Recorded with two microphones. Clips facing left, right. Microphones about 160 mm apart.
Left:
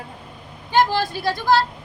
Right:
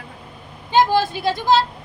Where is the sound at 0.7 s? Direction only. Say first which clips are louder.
Right 2 dB; 20° right (ahead or behind).